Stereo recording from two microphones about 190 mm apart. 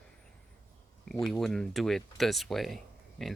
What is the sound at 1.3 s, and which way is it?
Speech, 5° left (ahead or behind).